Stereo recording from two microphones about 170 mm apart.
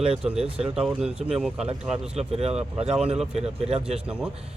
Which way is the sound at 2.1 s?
35° right (ahead or behind).